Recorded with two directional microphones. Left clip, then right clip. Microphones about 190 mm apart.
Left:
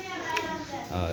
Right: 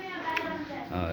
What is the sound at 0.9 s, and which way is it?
Speech, 10° left (ahead or behind).